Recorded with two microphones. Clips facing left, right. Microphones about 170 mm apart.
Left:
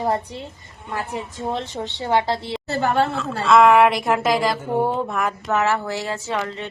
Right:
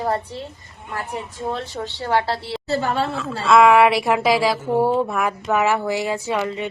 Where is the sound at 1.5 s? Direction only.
20° left (ahead or behind).